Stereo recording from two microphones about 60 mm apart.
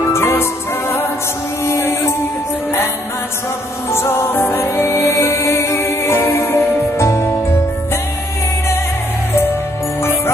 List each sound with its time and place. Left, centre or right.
0.0 s music: left
3.9 s music: left